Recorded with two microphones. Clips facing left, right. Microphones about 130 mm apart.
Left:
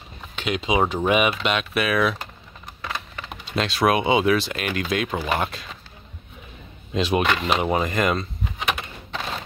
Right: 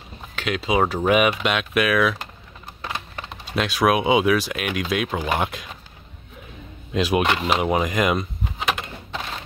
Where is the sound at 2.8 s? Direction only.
20° right (ahead or behind).